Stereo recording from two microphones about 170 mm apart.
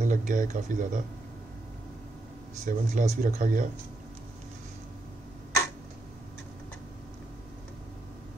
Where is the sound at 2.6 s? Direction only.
50° right (ahead or behind).